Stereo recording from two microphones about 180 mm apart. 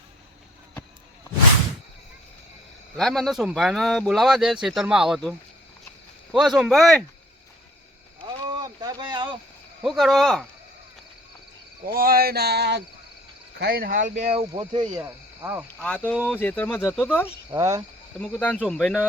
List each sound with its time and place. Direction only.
3.0 s a man's voice: centre (ahead or behind)
6.3 s a man's voice: centre (ahead or behind)
8.2 s rowboat: 20° right (ahead or behind)
9.8 s a man's voice: centre (ahead or behind)
11.9 s a sound: 55° right (ahead or behind)
13.6 s speech: 60° right (ahead or behind)
14.5 s speech: 25° right (ahead or behind)
15.0 s speech: 10° right (ahead or behind)
15.8 s speech: 10° left (ahead or behind)
17.5 s speech: 20° right (ahead or behind)
18.2 s speech: 10° left (ahead or behind)